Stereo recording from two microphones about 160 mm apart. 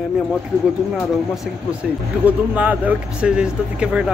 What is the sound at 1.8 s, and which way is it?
Speech, centre (ahead or behind).